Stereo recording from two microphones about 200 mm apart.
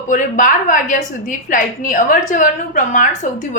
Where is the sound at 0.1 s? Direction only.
40° left (ahead or behind).